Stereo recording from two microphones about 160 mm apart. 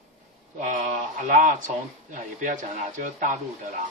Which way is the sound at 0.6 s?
50° right (ahead or behind).